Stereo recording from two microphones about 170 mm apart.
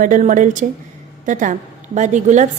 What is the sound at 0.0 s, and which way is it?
A woman's voice, 50° right (ahead or behind).